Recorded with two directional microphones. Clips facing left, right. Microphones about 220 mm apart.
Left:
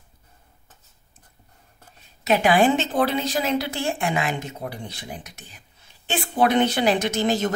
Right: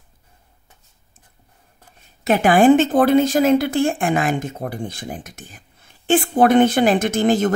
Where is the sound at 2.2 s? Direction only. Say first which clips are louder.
Right 5 dB; 50° right (ahead or behind).